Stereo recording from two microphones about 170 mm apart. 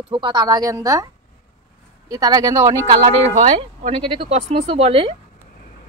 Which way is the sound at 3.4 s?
35° right (ahead or behind).